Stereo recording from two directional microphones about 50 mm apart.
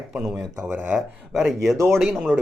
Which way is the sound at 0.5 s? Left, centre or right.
Right.